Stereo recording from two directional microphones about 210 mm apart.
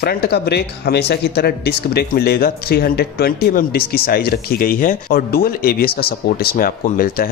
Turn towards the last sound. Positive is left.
turn(degrees=45)  # may be behind; listen again after turning